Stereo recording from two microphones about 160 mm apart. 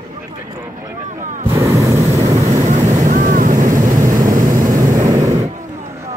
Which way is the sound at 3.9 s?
25° right (ahead or behind).